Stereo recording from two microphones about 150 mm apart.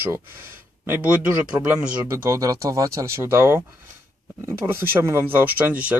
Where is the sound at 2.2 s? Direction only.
20° right (ahead or behind).